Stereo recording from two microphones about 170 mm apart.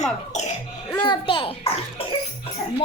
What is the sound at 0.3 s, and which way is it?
Cough, 40° left (ahead or behind).